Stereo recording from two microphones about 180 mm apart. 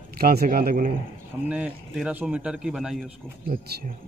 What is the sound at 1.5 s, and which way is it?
A man's voice, 10° right (ahead or behind).